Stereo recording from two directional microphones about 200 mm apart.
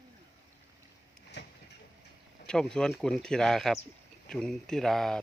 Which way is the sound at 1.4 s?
60° left (ahead or behind).